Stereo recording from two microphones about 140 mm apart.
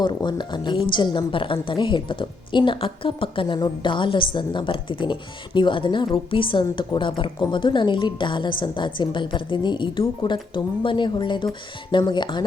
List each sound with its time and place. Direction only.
0.0 s a woman's voice: 30° left (ahead or behind)